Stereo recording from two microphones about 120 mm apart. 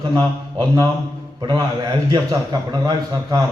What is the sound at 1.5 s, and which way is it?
A man's voice, 35° right (ahead or behind).